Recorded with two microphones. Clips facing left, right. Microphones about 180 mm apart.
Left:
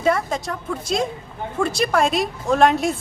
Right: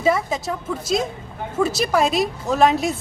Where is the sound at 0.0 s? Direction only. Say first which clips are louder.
Even; centre (ahead or behind).